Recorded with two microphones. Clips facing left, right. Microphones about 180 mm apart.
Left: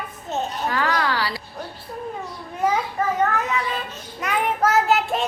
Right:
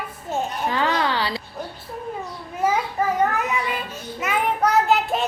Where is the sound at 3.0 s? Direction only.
10° right (ahead or behind).